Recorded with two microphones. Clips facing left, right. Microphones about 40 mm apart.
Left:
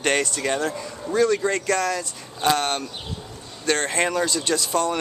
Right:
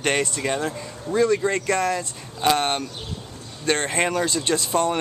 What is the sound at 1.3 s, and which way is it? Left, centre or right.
Speech, centre.